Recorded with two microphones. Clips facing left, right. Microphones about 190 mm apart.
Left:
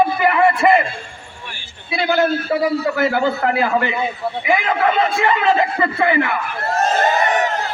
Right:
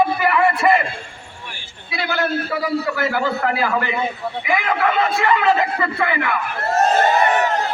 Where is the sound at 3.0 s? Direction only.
25° left (ahead or behind).